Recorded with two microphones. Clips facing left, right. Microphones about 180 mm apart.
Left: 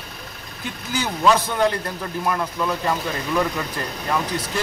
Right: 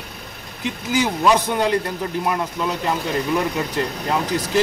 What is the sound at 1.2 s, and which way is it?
Speech, 15° right (ahead or behind).